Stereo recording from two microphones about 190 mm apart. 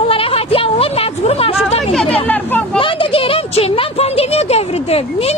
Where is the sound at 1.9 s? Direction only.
Centre (ahead or behind).